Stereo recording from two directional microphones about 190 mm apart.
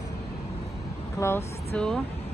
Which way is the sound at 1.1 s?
15° left (ahead or behind).